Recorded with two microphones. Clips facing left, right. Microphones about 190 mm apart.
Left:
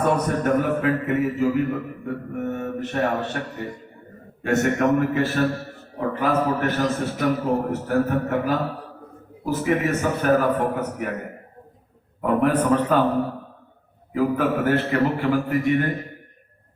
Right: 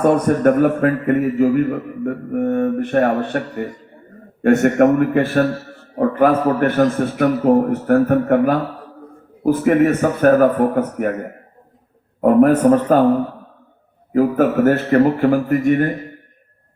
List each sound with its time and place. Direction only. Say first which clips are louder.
0.0 s a man's voice: right 8 dB; 50° right (ahead or behind)
4.4 s a man's voice: right 7 dB; 55° right (ahead or behind)
12.2 s a man's voice: right 8 dB; 45° right (ahead or behind)
14.1 s a man's voice: right 6 dB; 45° right (ahead or behind)